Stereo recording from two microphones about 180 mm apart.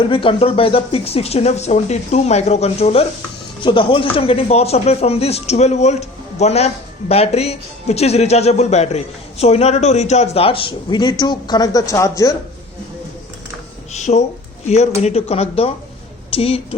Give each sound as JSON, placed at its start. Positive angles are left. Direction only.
{"t": 0.1, "sound": "a man's voice", "side_deg": 30}
{"t": 13.9, "sound": "a man's voice", "side_deg": 40}